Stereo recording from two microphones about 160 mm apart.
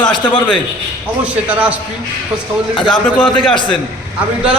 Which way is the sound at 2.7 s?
30° left (ahead or behind).